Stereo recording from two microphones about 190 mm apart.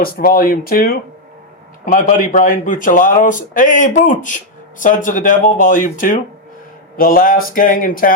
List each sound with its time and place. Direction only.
0.0 s speech: 50° left (ahead or behind)